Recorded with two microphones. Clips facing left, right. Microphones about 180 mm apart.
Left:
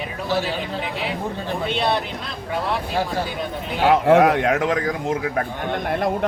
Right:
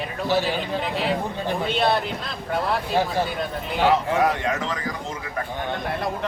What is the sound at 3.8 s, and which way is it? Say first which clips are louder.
A man's voice: left 5 dB; 70° left (ahead or behind).